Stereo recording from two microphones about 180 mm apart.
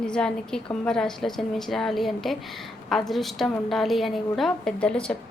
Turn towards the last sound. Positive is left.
turn(degrees=5)  # may be behind; listen again after turning